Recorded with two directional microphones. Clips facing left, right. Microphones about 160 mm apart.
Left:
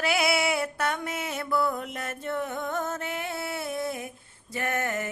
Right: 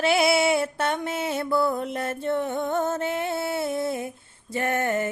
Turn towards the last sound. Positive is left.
turn(degrees=-30)  # may be behind; listen again after turning